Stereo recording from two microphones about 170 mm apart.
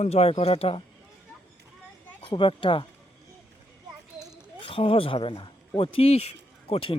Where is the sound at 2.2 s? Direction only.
30° left (ahead or behind).